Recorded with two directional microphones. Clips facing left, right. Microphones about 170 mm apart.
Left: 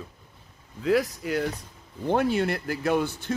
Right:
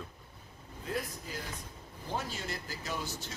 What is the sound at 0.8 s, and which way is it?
Speech, 80° left.